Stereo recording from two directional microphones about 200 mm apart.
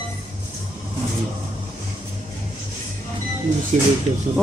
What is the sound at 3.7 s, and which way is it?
Speech, 35° right (ahead or behind).